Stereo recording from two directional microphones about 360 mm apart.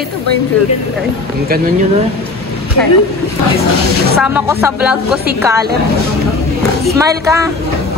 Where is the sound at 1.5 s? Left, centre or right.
Right.